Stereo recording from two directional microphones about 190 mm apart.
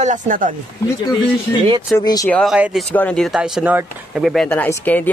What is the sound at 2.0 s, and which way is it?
Speech, 15° left (ahead or behind).